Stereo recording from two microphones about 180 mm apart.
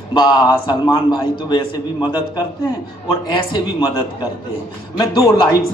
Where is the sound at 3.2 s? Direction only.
25° left (ahead or behind).